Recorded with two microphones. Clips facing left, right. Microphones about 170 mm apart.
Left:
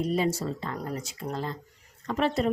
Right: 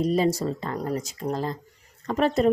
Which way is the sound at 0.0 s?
40° right (ahead or behind).